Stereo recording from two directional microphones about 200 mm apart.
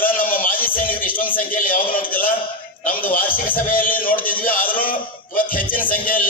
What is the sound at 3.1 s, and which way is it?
Music, 45° left (ahead or behind).